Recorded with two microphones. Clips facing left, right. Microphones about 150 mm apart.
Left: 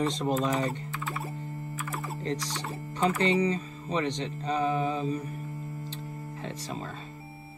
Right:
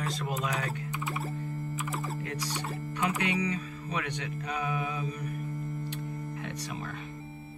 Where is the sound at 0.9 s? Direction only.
15° right (ahead or behind).